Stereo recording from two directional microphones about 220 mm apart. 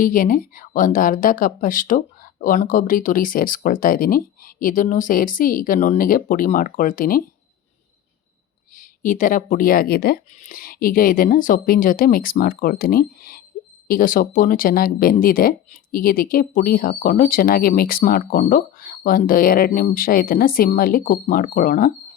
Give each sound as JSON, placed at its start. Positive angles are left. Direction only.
{"t": 0.0, "sound": "speech", "side_deg": 40}
{"t": 8.7, "sound": "speech", "side_deg": 35}